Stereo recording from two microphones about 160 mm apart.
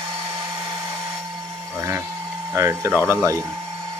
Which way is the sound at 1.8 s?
15° right (ahead or behind).